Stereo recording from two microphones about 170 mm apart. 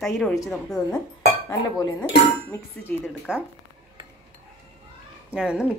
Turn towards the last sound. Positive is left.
turn(degrees=-5)  # may be behind; listen again after turning